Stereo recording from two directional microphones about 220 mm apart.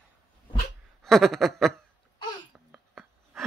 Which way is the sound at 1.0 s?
Centre (ahead or behind).